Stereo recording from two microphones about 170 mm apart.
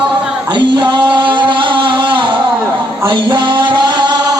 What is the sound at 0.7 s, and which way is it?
Music, 25° right (ahead or behind).